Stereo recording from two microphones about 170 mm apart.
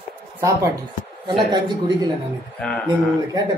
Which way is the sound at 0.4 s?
20° right (ahead or behind).